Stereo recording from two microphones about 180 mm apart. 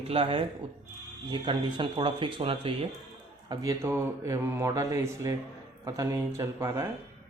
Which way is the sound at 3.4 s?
20° right (ahead or behind).